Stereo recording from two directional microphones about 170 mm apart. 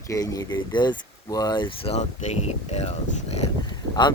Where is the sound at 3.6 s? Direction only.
25° left (ahead or behind).